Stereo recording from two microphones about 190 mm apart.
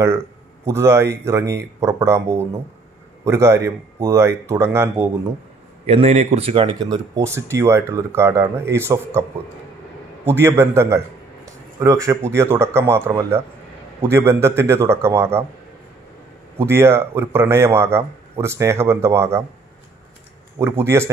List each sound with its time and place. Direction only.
0.7 s speech: 15° right (ahead or behind)
5.9 s speech: 35° right (ahead or behind); by 9.2 s 15° right (ahead or behind)
10.2 s speech: 15° right (ahead or behind)
16.5 s speech: 15° right (ahead or behind)
20.5 s speech: 15° right (ahead or behind)